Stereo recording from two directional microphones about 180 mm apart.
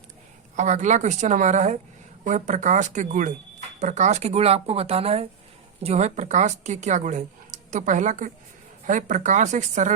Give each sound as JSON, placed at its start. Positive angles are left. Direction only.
{"t": 0.5, "sound": "a woman's voice", "side_deg": -45}